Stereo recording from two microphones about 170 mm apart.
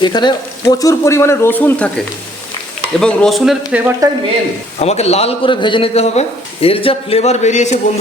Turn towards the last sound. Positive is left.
turn(degrees=40)  # may be behind; listen again after turning